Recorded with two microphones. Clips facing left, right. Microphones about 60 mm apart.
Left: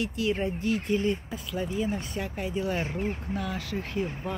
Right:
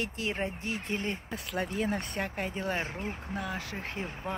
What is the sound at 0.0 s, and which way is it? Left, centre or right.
Speech, right.